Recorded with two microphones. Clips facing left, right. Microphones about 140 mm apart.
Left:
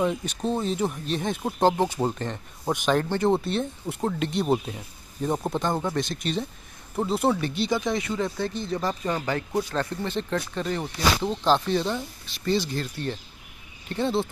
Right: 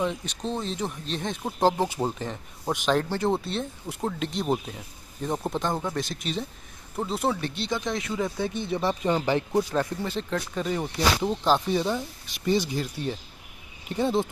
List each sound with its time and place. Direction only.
0.0 s speech: 5° left (ahead or behind)
8.8 s speech: 20° right (ahead or behind)